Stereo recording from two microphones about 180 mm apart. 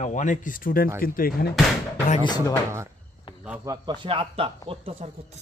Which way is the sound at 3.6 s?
20° right (ahead or behind).